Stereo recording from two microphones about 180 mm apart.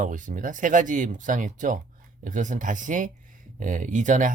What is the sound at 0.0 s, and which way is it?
Speech, 45° right (ahead or behind).